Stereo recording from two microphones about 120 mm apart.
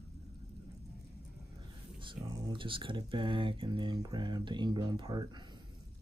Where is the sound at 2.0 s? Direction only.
45° right (ahead or behind).